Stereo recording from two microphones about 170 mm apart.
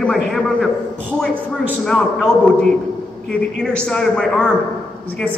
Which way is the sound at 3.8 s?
5° left (ahead or behind).